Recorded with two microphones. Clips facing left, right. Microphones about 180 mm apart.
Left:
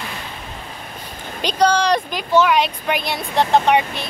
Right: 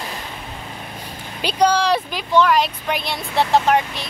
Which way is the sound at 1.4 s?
10° right (ahead or behind).